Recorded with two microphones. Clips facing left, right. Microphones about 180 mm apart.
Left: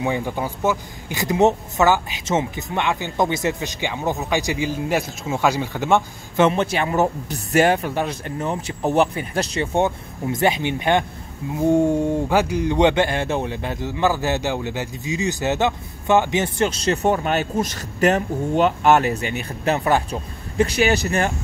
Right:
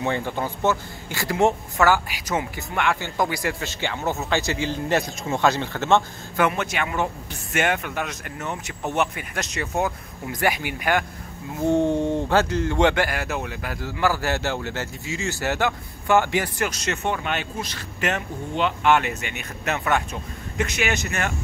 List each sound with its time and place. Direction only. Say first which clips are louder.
0.0 s a man's voice: left 2 dB; 10° left (ahead or behind)
6.3 s speech: left 5 dB; 25° left (ahead or behind)
11.6 s speech: left 3 dB; 10° left (ahead or behind); by 21.3 s 35° left (ahead or behind)